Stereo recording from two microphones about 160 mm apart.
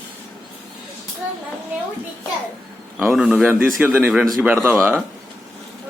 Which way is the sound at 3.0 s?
Centre (ahead or behind).